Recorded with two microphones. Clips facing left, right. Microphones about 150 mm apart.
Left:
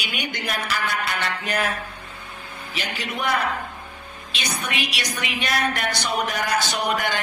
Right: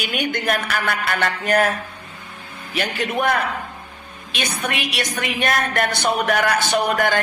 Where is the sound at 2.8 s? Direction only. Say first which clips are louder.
Right 7 dB; 55° right (ahead or behind).